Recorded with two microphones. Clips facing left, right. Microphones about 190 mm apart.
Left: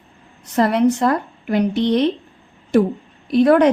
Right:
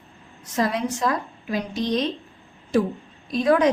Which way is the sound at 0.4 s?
65° left (ahead or behind).